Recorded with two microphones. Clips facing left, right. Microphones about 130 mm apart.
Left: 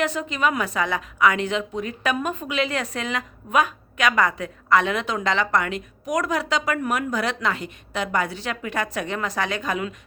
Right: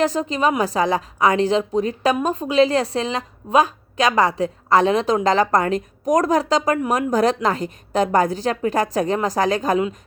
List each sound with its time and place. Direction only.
0.0 s a woman's voice: 35° right (ahead or behind)